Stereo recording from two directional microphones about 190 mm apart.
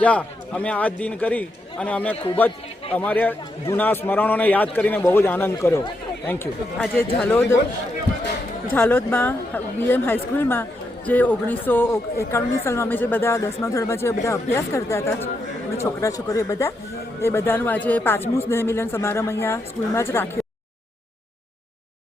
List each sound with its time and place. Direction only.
0.0 s speech: 5° left (ahead or behind)
8.7 s speech: 10° left (ahead or behind)